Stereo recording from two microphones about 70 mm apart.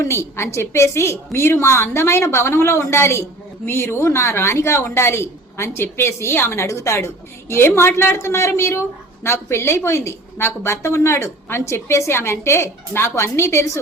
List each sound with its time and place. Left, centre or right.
0.0 s speech: left